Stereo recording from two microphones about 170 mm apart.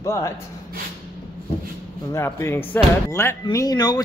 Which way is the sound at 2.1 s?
15° left (ahead or behind).